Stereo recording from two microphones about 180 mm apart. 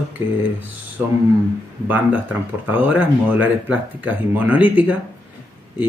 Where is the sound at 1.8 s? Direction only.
10° right (ahead or behind).